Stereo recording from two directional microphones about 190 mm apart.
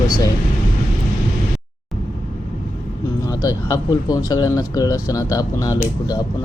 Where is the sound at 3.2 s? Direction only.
20° left (ahead or behind).